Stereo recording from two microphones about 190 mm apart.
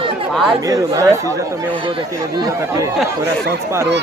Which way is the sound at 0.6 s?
20° right (ahead or behind).